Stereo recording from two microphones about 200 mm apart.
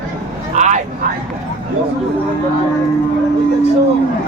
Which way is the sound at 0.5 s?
35° right (ahead or behind).